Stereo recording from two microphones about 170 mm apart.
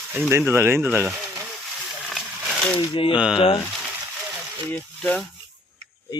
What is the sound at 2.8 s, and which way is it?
Speech, 30° left (ahead or behind).